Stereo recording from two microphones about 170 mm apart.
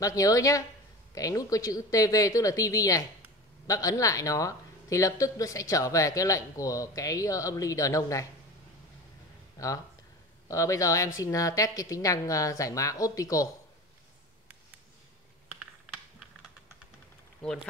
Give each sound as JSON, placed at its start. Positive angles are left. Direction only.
{"t": 0.0, "sound": "speech", "side_deg": 20}
{"t": 10.5, "sound": "speech", "side_deg": 20}
{"t": 17.4, "sound": "speech", "side_deg": 5}